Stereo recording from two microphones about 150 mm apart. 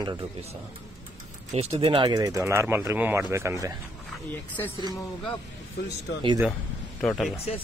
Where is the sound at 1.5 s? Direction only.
40° right (ahead or behind); by 3.7 s 20° right (ahead or behind).